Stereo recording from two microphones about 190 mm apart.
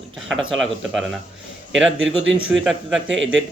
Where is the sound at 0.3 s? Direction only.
Centre (ahead or behind).